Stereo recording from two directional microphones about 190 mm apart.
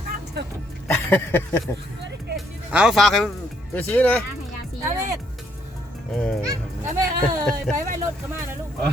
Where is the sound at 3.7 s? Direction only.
10° left (ahead or behind).